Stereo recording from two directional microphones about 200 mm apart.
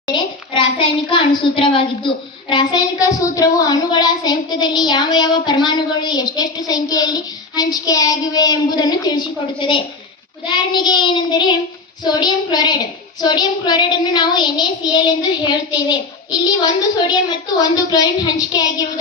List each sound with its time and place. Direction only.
0.0 s a child's voice: 25° left (ahead or behind)